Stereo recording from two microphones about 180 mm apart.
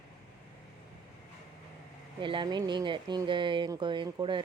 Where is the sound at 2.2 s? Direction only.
25° right (ahead or behind).